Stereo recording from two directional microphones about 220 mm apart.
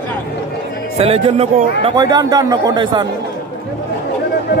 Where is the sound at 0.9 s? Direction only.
25° right (ahead or behind).